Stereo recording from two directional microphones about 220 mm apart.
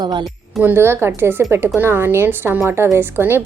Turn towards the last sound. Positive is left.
turn(degrees=-10)  # may be behind; listen again after turning